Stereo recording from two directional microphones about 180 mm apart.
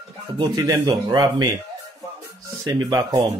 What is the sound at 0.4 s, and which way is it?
Speech, 20° right (ahead or behind).